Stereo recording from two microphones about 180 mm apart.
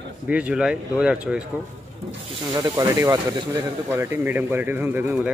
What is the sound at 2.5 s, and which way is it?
Speech, 20° right (ahead or behind).